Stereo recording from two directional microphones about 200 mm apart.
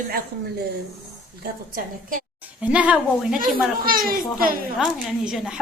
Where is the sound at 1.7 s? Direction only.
45° right (ahead or behind).